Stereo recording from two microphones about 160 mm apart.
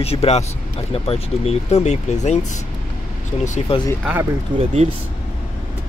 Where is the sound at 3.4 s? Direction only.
45° left (ahead or behind).